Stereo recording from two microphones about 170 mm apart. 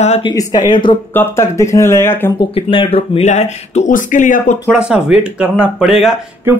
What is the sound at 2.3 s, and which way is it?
Speech, 30° left (ahead or behind).